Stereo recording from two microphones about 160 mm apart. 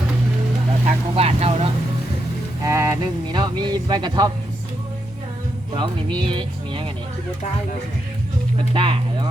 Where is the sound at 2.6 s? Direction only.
20° right (ahead or behind).